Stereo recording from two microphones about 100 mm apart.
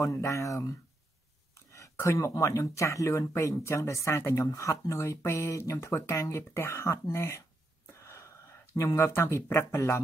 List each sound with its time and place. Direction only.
0.0 s speech: 30° left (ahead or behind)